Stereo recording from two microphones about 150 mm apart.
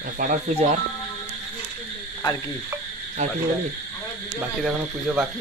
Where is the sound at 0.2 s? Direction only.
60° right (ahead or behind).